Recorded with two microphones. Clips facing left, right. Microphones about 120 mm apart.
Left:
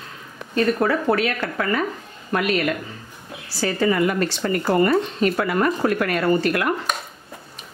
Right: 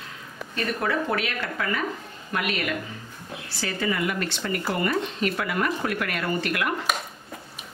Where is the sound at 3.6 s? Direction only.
40° left (ahead or behind).